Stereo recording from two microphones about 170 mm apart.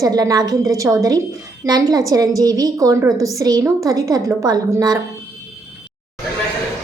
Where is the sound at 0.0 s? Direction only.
20° right (ahead or behind).